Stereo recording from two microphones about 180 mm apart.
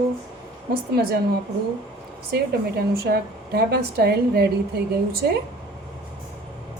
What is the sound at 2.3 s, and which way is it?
A woman's voice, 65° right (ahead or behind).